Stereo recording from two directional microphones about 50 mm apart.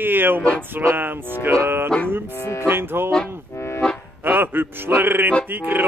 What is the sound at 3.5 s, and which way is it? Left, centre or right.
Accordion, left.